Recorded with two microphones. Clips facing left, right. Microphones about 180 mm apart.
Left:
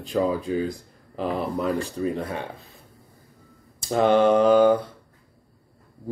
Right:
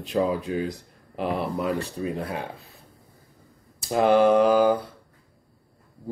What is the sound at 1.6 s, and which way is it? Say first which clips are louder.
Speech: left 2 dB; 35° left (ahead or behind).